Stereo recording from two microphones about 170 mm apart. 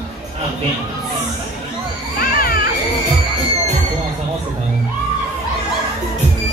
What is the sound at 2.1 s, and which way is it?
Children playing, 60° left (ahead or behind).